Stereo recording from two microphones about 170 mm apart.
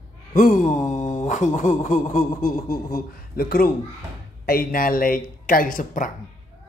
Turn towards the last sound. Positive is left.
turn(degrees=50)  # may be behind; listen again after turning